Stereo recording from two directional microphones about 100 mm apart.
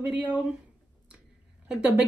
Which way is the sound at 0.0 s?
15° right (ahead or behind).